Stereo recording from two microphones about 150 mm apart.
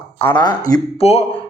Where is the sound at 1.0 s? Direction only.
45° left (ahead or behind).